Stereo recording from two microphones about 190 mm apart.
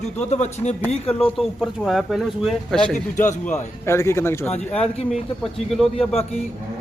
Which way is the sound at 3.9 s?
15° left (ahead or behind).